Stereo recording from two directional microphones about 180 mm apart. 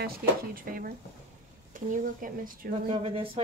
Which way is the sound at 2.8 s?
30° right (ahead or behind).